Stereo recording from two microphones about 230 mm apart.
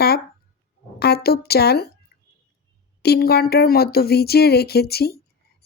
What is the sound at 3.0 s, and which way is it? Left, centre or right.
Speech, left.